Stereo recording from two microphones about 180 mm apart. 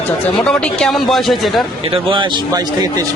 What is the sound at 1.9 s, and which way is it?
Speech, 25° right (ahead or behind).